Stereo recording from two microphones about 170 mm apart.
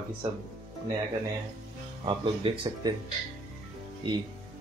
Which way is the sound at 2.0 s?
30° right (ahead or behind).